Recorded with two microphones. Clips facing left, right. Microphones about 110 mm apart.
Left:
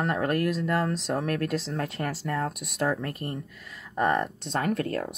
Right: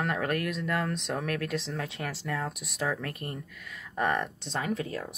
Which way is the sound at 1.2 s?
35° left (ahead or behind).